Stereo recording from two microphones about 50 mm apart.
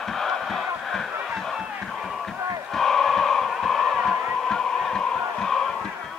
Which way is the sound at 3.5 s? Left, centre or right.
Centre.